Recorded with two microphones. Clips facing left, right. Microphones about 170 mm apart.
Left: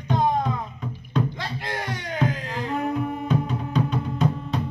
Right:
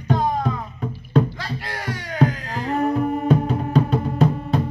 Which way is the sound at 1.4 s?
20° left (ahead or behind).